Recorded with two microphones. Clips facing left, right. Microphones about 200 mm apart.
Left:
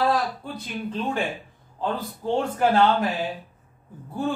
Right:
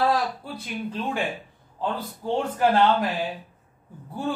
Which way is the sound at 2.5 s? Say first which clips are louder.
Even; 10° right (ahead or behind).